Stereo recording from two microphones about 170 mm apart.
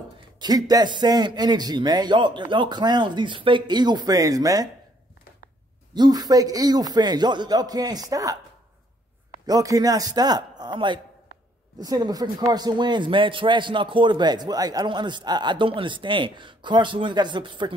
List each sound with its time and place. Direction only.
0.4 s speech: 20° right (ahead or behind)
5.9 s speech: 25° right (ahead or behind)
9.5 s speech: 20° right (ahead or behind)